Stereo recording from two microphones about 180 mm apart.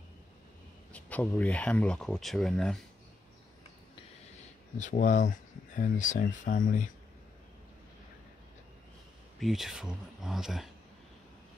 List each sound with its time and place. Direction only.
0.9 s speech: 10° left (ahead or behind)
4.7 s speech: 45° left (ahead or behind)
9.4 s speech: centre (ahead or behind)